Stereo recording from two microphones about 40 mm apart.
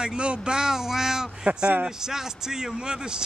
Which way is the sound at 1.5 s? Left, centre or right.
Right.